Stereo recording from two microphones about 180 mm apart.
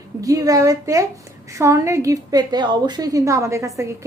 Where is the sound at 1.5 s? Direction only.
15° right (ahead or behind).